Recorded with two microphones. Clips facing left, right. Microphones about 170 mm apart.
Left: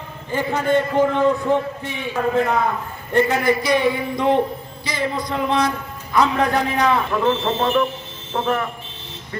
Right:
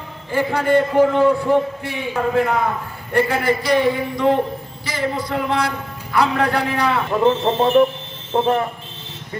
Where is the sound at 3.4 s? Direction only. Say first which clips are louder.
Right 1 dB; 15° left (ahead or behind).